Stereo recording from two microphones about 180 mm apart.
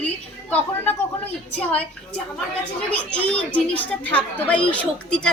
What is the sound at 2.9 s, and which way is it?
A woman's voice, 5° left (ahead or behind).